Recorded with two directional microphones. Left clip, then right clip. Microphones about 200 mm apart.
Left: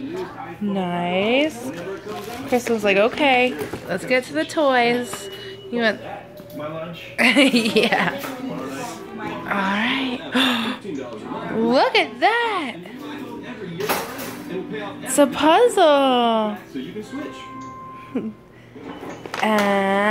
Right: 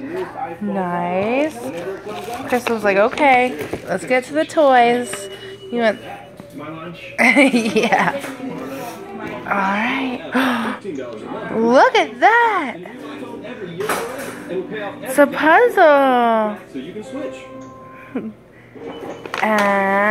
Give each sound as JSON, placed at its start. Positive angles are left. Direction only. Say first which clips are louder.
{"t": 0.7, "sound": "a woman's voice", "louder": "right 2 dB", "side_deg": 15}
{"t": 2.5, "sound": "a woman's voice", "louder": "right 2 dB", "side_deg": 15}
{"t": 7.2, "sound": "speech", "louder": "right 3 dB", "side_deg": -5}
{"t": 9.5, "sound": "a woman's voice", "louder": "right 3 dB", "side_deg": 10}
{"t": 15.0, "sound": "a woman's voice", "louder": "right 3 dB", "side_deg": 10}
{"t": 19.4, "sound": "a woman's voice", "louder": "right 3 dB", "side_deg": 15}